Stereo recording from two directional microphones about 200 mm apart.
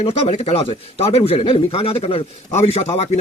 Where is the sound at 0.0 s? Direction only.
30° left (ahead or behind).